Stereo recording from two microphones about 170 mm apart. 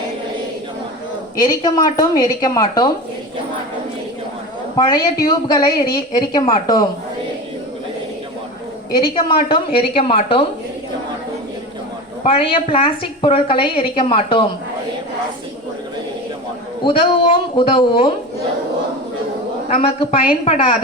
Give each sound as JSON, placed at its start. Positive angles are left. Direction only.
{"t": 1.4, "sound": "a woman's voice", "side_deg": 25}
{"t": 4.8, "sound": "a woman's voice", "side_deg": 25}
{"t": 8.9, "sound": "a woman's voice", "side_deg": 25}
{"t": 12.2, "sound": "a woman's voice", "side_deg": 35}
{"t": 16.8, "sound": "a woman's voice", "side_deg": 30}
{"t": 19.6, "sound": "a woman's voice", "side_deg": 35}